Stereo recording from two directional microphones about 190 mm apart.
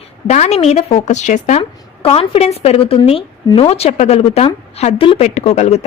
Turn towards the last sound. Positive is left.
turn(degrees=35)  # may be behind; listen again after turning